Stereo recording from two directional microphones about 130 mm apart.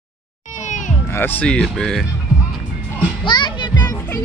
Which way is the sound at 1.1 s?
15° left (ahead or behind).